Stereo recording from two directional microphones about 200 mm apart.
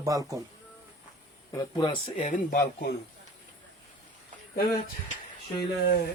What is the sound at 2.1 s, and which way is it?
Speech, 40° left (ahead or behind).